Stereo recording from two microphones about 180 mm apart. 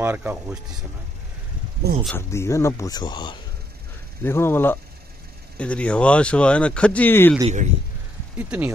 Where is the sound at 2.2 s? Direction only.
15° left (ahead or behind).